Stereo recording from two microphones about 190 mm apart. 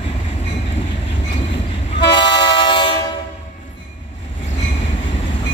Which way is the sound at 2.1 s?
25° left (ahead or behind).